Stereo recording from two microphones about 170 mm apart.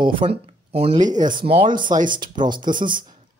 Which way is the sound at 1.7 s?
50° right (ahead or behind).